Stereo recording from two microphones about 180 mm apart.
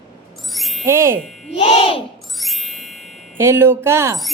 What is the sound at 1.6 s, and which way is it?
Speech, 35° left (ahead or behind).